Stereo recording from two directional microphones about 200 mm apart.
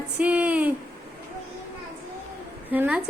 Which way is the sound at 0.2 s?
5° right (ahead or behind).